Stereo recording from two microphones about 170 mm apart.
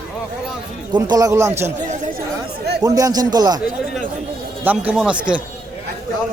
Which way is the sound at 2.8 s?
20° right (ahead or behind).